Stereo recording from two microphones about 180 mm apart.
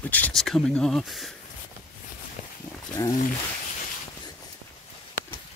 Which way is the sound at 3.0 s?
20° left (ahead or behind).